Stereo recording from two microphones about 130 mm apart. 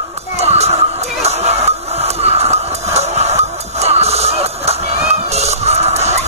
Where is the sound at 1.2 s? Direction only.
55° right (ahead or behind).